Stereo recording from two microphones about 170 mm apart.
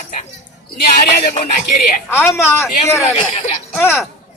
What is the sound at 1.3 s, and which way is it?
Speech, 50° left (ahead or behind).